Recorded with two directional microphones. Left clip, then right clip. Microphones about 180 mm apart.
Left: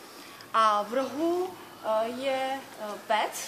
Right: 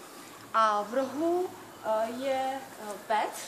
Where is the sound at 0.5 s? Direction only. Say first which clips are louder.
Left 2 dB; 50° left (ahead or behind).